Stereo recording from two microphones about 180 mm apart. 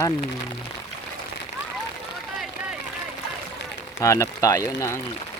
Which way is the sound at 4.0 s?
20° left (ahead or behind).